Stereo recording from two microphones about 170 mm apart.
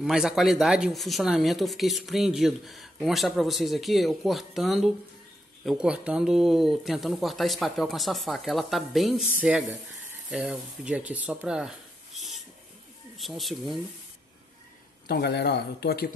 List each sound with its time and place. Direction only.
0.0 s speech: 5° right (ahead or behind)
13.2 s speech: centre (ahead or behind)
15.0 s speech: 75° left (ahead or behind)